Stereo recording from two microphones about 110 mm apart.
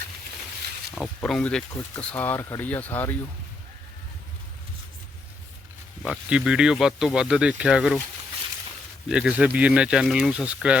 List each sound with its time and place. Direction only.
0.9 s a sound: centre (ahead or behind)
1.2 s speech: 10° left (ahead or behind)
6.0 s speech: 5° right (ahead or behind)
9.0 s speech: 5° right (ahead or behind)